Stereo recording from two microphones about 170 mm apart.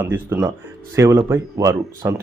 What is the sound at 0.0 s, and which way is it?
A man's voice, 10° right (ahead or behind).